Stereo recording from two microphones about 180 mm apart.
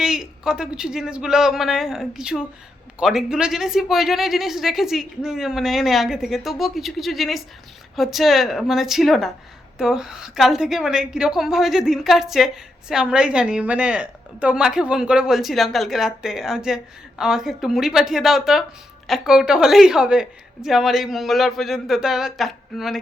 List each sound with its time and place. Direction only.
0.0 s a woman's voice: 5° right (ahead or behind)